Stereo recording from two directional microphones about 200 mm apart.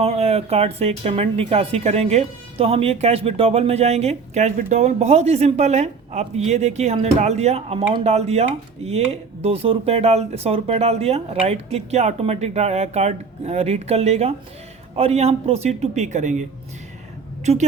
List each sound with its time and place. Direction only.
0.0 s a woman's voice: 30° right (ahead or behind)